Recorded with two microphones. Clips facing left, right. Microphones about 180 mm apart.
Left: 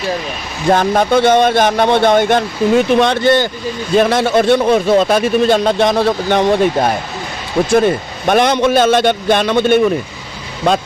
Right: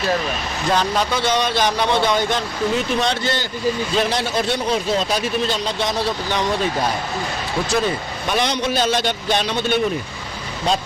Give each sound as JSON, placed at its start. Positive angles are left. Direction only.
{"t": 0.7, "sound": "a man's voice", "side_deg": 50}